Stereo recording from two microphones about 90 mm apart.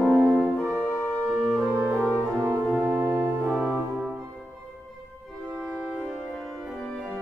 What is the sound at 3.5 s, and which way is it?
Music, centre (ahead or behind).